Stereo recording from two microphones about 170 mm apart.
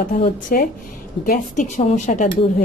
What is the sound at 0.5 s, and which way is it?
A woman's voice, 60° left (ahead or behind).